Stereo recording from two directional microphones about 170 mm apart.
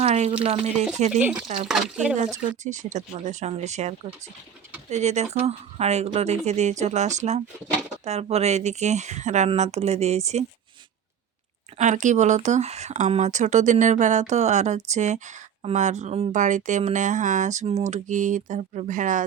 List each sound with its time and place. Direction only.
0.0 s a sound: 40° right (ahead or behind)
0.4 s speech: 35° right (ahead or behind)
1.6 s speech: 5° right (ahead or behind)
2.4 s speech: 45° right (ahead or behind)
11.8 s speech: 45° right (ahead or behind)